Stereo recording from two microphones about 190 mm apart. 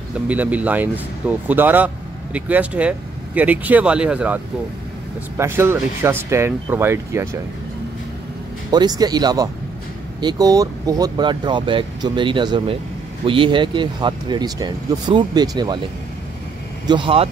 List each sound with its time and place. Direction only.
0.3 s speech: 10° right (ahead or behind)
5.4 s speech: 15° right (ahead or behind)
8.6 s speech: 20° right (ahead or behind)
16.8 s speech: 25° right (ahead or behind)